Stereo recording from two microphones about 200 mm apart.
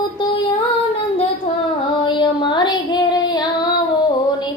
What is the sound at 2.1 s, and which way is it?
Female singing, 25° left (ahead or behind).